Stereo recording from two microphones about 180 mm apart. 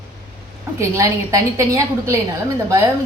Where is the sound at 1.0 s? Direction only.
15° right (ahead or behind).